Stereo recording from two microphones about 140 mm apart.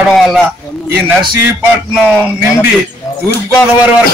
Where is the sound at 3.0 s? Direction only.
25° left (ahead or behind).